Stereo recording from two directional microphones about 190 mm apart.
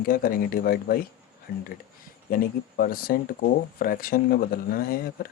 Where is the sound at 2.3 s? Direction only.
50° left (ahead or behind).